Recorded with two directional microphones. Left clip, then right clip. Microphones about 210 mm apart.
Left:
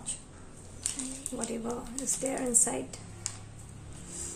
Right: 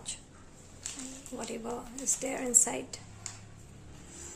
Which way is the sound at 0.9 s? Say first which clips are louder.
Left 5 dB; 5° right (ahead or behind).